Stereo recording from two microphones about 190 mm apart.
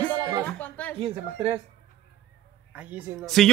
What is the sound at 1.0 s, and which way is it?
Speech, 30° right (ahead or behind).